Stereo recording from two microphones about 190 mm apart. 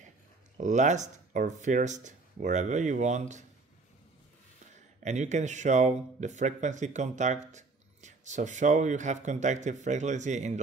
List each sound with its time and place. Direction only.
0.6 s speech: 40° right (ahead or behind)
4.7 s speech: 40° right (ahead or behind)